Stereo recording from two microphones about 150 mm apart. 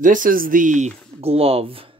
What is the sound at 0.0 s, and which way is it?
Speech, 65° right (ahead or behind).